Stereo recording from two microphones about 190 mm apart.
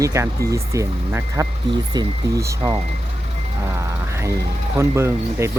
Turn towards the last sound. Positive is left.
turn(degrees=-15)  # may be behind; listen again after turning